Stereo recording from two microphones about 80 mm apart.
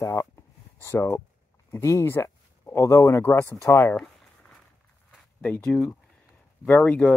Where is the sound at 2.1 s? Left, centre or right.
Left.